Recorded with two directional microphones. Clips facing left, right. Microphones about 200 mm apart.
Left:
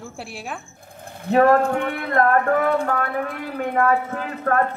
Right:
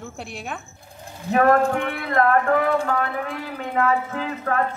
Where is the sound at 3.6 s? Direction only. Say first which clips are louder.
Left 2 dB; 55° left (ahead or behind).